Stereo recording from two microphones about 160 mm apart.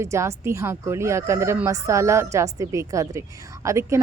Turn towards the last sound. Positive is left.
turn(degrees=-20)  # may be behind; listen again after turning